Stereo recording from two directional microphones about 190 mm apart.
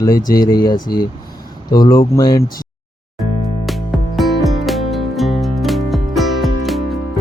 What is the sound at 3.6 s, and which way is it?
Music, centre (ahead or behind).